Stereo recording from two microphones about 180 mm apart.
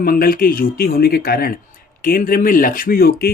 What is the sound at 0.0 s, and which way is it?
Speech, 55° left (ahead or behind).